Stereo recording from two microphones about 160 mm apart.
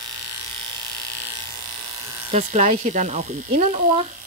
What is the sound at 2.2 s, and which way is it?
Speech, 45° right (ahead or behind).